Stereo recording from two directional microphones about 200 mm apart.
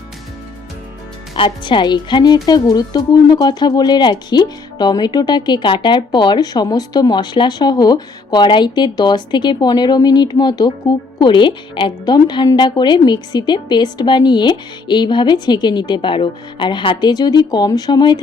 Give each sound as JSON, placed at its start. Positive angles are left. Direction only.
{"t": 1.4, "sound": "speech", "side_deg": 25}